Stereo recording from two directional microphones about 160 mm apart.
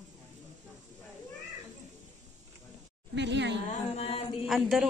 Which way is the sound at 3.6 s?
45° left (ahead or behind).